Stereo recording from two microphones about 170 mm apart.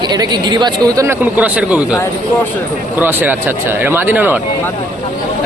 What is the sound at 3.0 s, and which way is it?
Speech, 10° right (ahead or behind).